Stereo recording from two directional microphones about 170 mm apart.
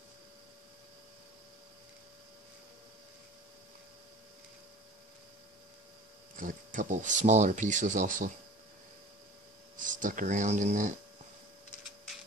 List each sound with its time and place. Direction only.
6.3 s speech: 50° right (ahead or behind)
9.8 s speech: 50° right (ahead or behind)